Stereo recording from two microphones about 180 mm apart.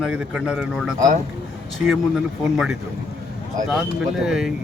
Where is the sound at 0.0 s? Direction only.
5° right (ahead or behind).